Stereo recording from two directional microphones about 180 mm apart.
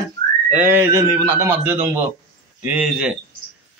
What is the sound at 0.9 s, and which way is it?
A man's voice, 15° right (ahead or behind).